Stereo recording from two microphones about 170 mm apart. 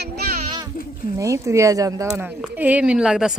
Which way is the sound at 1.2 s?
15° right (ahead or behind).